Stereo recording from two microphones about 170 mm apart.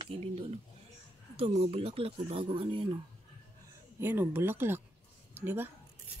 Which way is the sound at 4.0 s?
10° right (ahead or behind).